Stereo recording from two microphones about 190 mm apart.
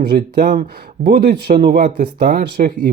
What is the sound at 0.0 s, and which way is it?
Speech, 55° right (ahead or behind).